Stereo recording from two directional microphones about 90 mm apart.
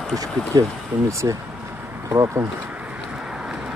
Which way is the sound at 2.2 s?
25° right (ahead or behind).